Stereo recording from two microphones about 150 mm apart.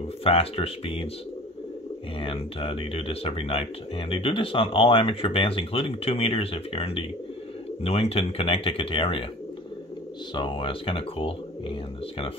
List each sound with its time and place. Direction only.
0.2 s speech: 40° left (ahead or behind)
2.1 s speech: 40° left (ahead or behind)
10.3 s speech: 35° left (ahead or behind)